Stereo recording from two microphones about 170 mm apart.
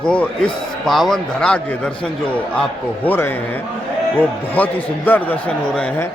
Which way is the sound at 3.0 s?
10° left (ahead or behind).